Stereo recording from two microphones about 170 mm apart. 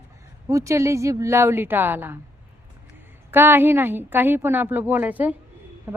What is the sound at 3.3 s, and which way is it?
A woman's voice, 10° right (ahead or behind).